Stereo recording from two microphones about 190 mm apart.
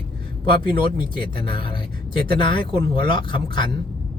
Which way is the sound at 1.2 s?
25° left (ahead or behind).